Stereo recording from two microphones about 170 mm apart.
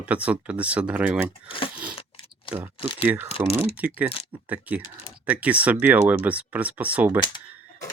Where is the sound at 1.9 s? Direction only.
35° left (ahead or behind).